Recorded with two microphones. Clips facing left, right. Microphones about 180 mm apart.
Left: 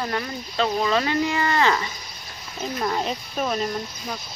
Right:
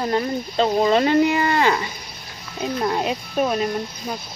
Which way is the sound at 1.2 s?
20° right (ahead or behind).